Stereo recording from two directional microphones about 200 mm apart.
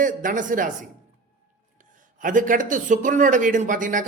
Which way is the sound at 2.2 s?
40° right (ahead or behind).